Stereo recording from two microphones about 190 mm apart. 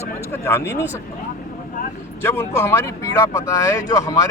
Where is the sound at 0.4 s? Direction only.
15° left (ahead or behind).